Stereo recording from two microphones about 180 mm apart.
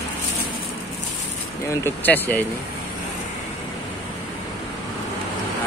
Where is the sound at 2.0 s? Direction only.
10° left (ahead or behind).